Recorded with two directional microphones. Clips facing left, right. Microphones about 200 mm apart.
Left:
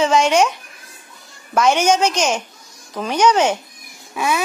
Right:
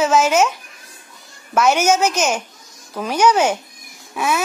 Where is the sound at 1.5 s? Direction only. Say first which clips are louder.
Even; 5° right (ahead or behind).